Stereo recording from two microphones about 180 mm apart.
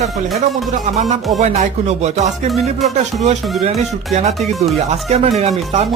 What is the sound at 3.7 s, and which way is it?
Speech, 35° right (ahead or behind).